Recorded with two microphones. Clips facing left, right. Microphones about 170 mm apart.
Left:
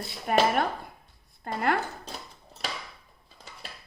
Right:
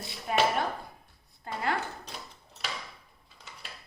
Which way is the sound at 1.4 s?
55° left (ahead or behind).